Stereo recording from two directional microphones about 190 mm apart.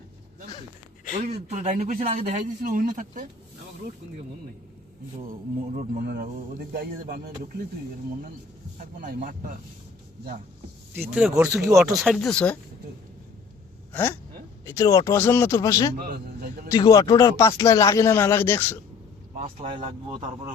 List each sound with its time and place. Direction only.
1.2 s a man's voice: 40° right (ahead or behind)
5.7 s a man's voice: 50° right (ahead or behind)
9.0 s a man's voice: 45° right (ahead or behind)
11.0 s speech: 5° right (ahead or behind)
13.9 s speech: 10° left (ahead or behind)
19.7 s speech: 30° right (ahead or behind)